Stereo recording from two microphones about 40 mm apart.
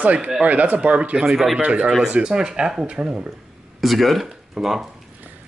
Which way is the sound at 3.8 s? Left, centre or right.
Centre.